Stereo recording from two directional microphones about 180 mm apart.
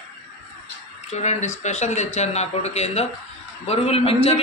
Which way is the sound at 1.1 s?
40° left (ahead or behind).